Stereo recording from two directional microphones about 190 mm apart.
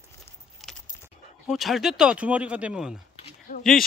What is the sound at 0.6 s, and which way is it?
Keys jangling, centre (ahead or behind).